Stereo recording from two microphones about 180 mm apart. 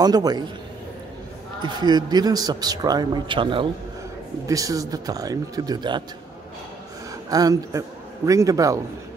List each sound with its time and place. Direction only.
0.0 s a man's voice: 20° right (ahead or behind)
1.6 s a man's voice: 25° right (ahead or behind)
7.2 s a man's voice: 20° right (ahead or behind)